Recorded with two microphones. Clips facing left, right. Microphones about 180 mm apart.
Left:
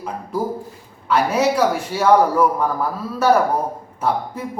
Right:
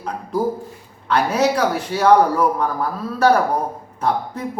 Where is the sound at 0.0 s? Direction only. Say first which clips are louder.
Right 2 dB; 5° left (ahead or behind).